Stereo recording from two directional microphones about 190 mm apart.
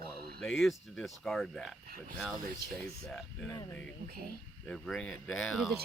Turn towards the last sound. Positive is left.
turn(degrees=0)  # may be behind; listen again after turning